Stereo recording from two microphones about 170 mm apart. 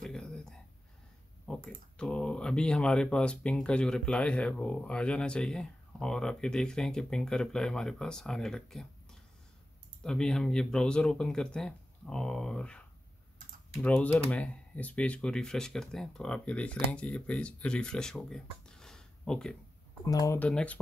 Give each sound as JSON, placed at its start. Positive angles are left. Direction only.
{"t": 0.0, "sound": "a sound", "side_deg": 5}
{"t": 1.4, "sound": "speech", "side_deg": 5}
{"t": 20.1, "sound": "speech", "side_deg": 20}
{"t": 20.3, "sound": "speech", "side_deg": 5}